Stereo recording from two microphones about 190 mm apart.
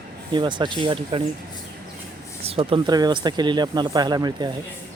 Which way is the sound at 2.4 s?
30° right (ahead or behind).